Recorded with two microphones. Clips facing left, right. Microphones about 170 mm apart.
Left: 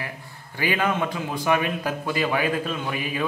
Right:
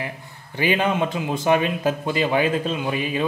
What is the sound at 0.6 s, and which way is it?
A man's voice, 20° right (ahead or behind).